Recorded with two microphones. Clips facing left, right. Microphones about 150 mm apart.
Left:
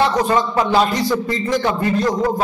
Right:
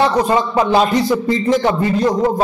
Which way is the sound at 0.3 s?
20° right (ahead or behind).